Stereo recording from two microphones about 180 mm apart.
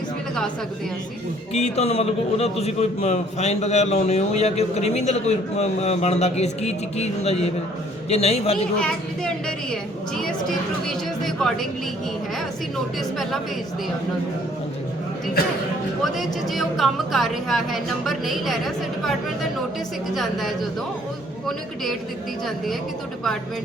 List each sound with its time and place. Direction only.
1.5 s a man's voice: 35° left (ahead or behind)
10.8 s speech: centre (ahead or behind)
16.1 s speech: centre (ahead or behind)
22.4 s speech: centre (ahead or behind)